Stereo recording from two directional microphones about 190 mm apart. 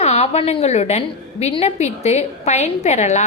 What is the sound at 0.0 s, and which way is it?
A woman's voice, 35° left (ahead or behind).